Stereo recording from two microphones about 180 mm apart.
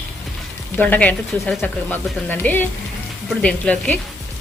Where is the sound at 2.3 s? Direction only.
10° left (ahead or behind).